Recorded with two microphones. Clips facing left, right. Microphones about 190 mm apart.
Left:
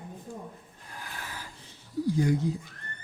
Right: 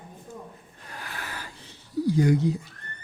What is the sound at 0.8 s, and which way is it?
Wheeze, 75° right (ahead or behind).